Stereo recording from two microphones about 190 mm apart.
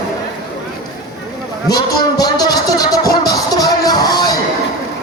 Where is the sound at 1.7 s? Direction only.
20° left (ahead or behind).